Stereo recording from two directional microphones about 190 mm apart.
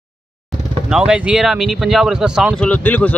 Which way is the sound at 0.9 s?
5° right (ahead or behind).